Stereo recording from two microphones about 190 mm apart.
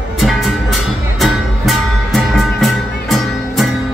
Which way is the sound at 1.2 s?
Centre (ahead or behind).